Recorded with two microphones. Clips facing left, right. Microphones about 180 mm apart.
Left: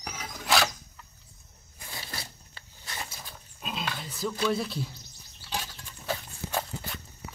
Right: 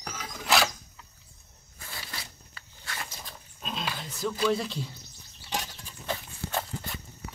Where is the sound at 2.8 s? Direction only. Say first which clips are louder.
Even; 20° left (ahead or behind).